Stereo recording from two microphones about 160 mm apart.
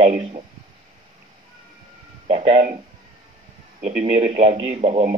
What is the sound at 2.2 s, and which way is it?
Speech, 40° right (ahead or behind).